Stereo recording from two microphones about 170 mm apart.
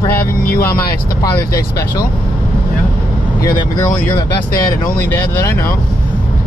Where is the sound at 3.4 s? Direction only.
25° left (ahead or behind).